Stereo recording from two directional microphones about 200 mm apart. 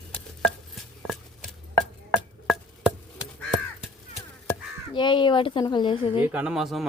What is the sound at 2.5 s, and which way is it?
Chop, 5° right (ahead or behind).